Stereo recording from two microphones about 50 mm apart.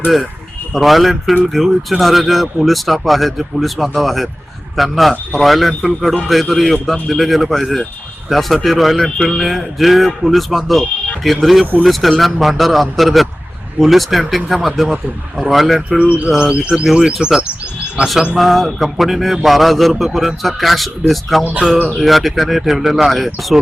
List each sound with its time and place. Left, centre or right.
0.7 s speech: centre
15.9 s bird: right
16.9 s speech: centre
18.3 s speech: centre